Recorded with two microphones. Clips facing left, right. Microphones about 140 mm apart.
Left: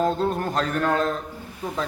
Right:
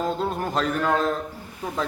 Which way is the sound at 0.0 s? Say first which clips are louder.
Left 3 dB; centre (ahead or behind).